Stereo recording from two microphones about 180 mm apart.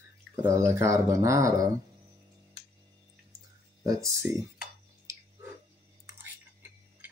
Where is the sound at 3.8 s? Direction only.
20° right (ahead or behind).